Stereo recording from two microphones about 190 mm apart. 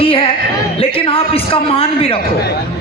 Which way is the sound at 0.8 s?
30° left (ahead or behind).